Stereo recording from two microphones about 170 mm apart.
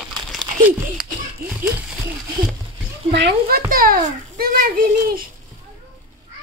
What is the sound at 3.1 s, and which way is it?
A child's voice, 85° right.